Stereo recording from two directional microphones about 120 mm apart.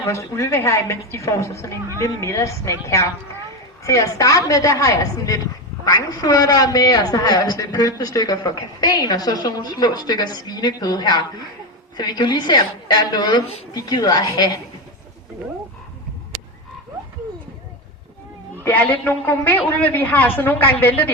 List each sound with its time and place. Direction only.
0.0 s a woman's voice: 25° left (ahead or behind)
18.6 s a man's voice: 15° left (ahead or behind)